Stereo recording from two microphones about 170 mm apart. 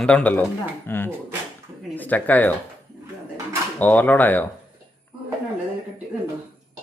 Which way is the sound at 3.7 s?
10° left (ahead or behind).